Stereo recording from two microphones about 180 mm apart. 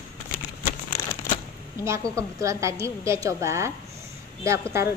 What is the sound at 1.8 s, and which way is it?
A woman's voice, 15° right (ahead or behind).